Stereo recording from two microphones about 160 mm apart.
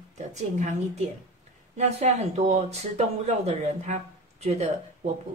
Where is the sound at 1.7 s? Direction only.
45° right (ahead or behind).